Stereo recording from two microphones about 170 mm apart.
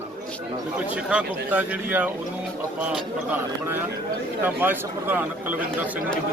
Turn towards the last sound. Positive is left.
turn(degrees=-10)  # may be behind; listen again after turning